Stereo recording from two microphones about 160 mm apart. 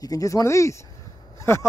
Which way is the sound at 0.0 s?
20° left (ahead or behind).